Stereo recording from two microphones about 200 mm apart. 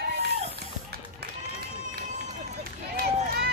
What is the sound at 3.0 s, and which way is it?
Run, 50° right (ahead or behind).